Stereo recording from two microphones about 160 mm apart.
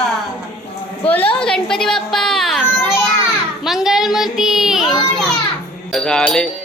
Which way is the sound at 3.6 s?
Centre (ahead or behind).